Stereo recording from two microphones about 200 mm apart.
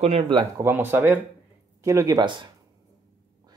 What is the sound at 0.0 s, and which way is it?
Speech, 25° right (ahead or behind).